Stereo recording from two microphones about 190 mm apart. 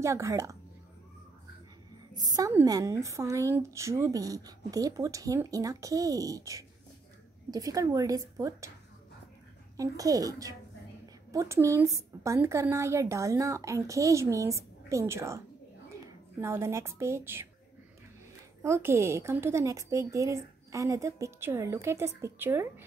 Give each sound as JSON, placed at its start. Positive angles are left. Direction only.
{"t": 0.0, "sound": "a woman's voice", "side_deg": -15}
{"t": 2.1, "sound": "a woman's voice", "side_deg": -20}
{"t": 9.8, "sound": "a child's voice", "side_deg": -20}
{"t": 18.6, "sound": "a woman's voice", "side_deg": -15}